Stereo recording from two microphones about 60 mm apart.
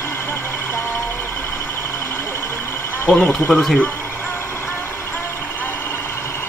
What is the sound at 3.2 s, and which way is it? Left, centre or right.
Speech, centre.